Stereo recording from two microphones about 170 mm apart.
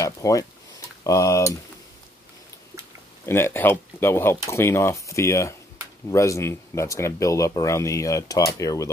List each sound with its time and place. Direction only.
0.0 s speech: 20° left (ahead or behind)
3.3 s speech: 15° left (ahead or behind)